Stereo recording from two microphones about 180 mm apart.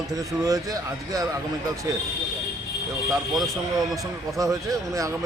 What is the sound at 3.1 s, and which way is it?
Speech, centre (ahead or behind).